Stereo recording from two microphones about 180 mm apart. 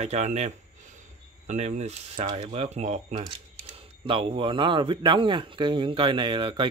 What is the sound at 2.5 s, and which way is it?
Speech, 35° right (ahead or behind).